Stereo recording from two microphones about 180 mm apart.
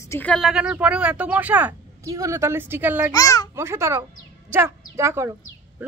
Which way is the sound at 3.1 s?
20° left (ahead or behind).